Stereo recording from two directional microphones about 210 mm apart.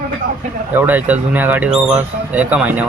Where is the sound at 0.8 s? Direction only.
10° right (ahead or behind).